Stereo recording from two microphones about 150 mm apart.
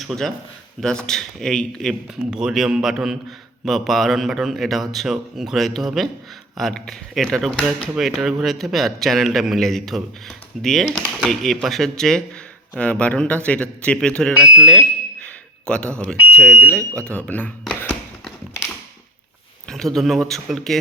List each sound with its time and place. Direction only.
0.0 s a man's voice: centre (ahead or behind)
14.3 s speech: 5° right (ahead or behind)
14.7 s a sound: 5° left (ahead or behind)
16.1 s speech: 10° right (ahead or behind)
16.7 s speech: 5° left (ahead or behind)
19.6 s speech: 5° left (ahead or behind)